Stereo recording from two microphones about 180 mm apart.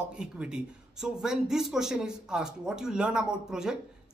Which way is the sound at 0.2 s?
5° right (ahead or behind).